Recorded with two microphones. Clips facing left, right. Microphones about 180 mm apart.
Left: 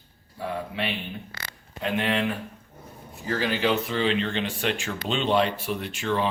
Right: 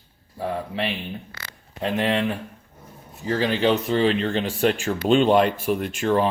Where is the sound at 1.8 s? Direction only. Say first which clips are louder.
Right 3 dB; 35° right (ahead or behind).